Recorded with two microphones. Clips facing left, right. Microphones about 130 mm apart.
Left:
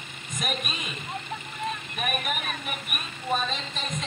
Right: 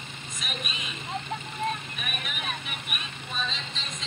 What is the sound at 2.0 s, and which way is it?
Speech, 45° left (ahead or behind).